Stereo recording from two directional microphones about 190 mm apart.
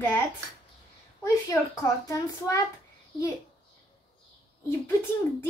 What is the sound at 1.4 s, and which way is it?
A child's voice, 15° left (ahead or behind).